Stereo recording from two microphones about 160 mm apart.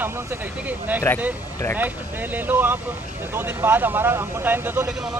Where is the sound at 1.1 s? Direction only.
15° left (ahead or behind).